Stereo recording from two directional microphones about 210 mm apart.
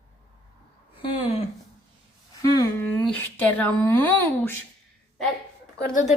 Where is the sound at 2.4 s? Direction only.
15° left (ahead or behind).